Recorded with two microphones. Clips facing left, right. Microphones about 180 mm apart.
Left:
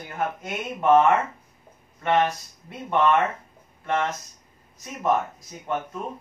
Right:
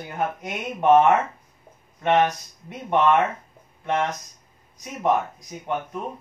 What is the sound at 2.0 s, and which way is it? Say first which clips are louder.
Speech: right 2 dB; 15° right (ahead or behind).